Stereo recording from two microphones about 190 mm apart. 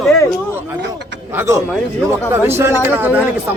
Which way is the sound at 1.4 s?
15° right (ahead or behind).